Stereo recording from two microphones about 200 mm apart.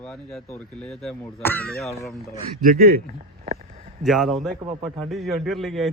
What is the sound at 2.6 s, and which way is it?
Speech, 40° right (ahead or behind).